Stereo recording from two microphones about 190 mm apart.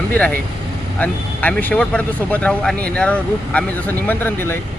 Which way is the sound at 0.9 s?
10° left (ahead or behind).